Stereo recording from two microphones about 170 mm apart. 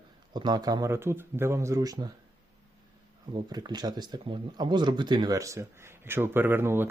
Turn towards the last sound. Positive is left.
turn(degrees=-15)  # may be behind; listen again after turning